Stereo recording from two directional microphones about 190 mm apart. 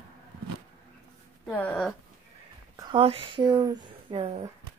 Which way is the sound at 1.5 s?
10° left (ahead or behind).